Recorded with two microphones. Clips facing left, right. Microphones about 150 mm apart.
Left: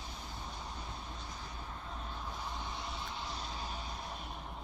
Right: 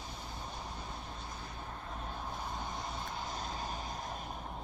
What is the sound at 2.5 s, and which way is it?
Vehicle, 45° right (ahead or behind).